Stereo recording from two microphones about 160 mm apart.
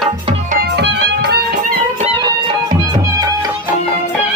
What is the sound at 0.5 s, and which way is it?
Music, 90° right.